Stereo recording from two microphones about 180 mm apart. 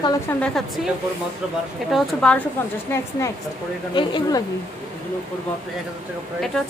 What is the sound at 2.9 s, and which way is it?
Speech, 15° left (ahead or behind).